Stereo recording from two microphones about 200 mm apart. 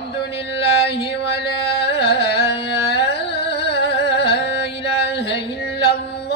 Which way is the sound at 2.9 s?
60° left (ahead or behind).